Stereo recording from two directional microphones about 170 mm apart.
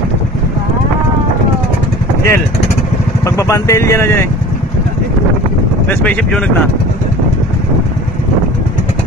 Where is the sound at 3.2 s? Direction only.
15° left (ahead or behind).